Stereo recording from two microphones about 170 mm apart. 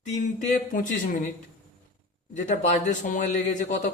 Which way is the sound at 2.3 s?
45° left (ahead or behind).